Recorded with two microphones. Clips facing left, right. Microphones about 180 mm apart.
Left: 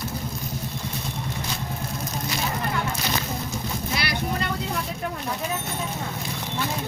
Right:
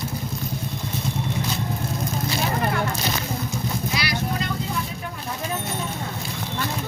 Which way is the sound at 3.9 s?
55° left (ahead or behind).